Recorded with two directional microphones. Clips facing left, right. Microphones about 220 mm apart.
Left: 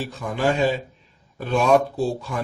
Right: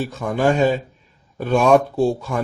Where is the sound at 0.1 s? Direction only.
45° right (ahead or behind).